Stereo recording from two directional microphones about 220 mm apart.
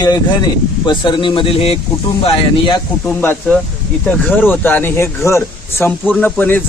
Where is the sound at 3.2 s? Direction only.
10° left (ahead or behind).